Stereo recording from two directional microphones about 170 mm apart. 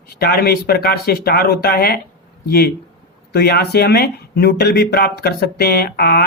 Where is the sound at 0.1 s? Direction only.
65° left (ahead or behind).